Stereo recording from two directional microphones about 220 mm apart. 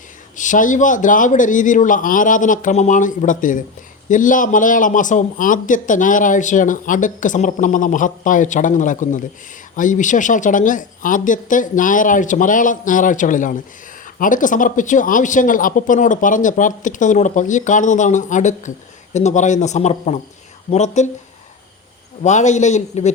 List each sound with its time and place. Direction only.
0.3 s speech: 35° left (ahead or behind)
22.2 s speech: 30° left (ahead or behind)